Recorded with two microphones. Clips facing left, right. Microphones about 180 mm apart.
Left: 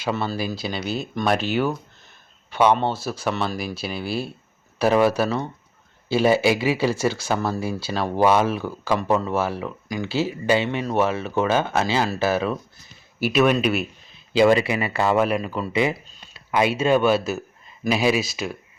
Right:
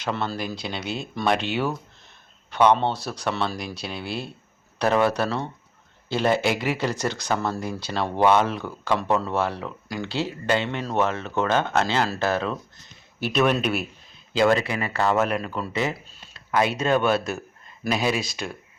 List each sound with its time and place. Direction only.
0.0 s speech: 5° left (ahead or behind)
15.7 s speech: 10° left (ahead or behind)
16.0 s a sound: 5° right (ahead or behind)
16.5 s speech: 10° left (ahead or behind)